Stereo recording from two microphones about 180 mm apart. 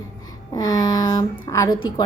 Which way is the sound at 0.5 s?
20° left (ahead or behind).